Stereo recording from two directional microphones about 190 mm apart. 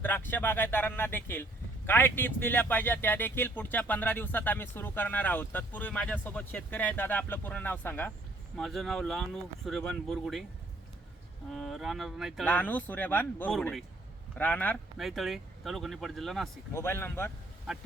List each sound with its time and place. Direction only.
0.0 s speech: 10° left (ahead or behind)
11.5 s speech: centre (ahead or behind)
12.5 s speech: 10° left (ahead or behind)
16.7 s speech: 10° left (ahead or behind)